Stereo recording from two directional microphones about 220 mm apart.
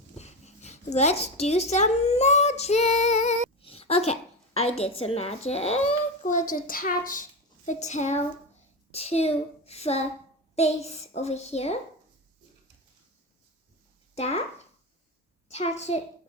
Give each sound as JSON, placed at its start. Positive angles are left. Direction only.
{"t": 0.2, "sound": "a sound", "side_deg": 30}
{"t": 1.2, "sound": "a woman's voice", "side_deg": 30}
{"t": 14.2, "sound": "a child's voice", "side_deg": 30}